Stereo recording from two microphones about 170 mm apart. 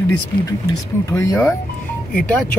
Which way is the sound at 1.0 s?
20° left (ahead or behind).